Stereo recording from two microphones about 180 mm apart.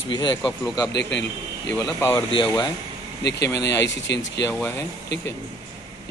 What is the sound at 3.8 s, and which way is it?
Speech, 80° left.